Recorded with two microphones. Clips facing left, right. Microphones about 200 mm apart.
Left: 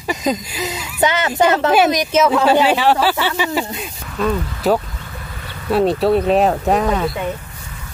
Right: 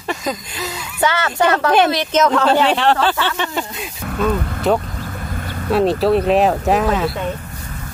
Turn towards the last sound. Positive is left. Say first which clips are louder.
# even
turn(degrees=-5)  # may be behind; listen again after turning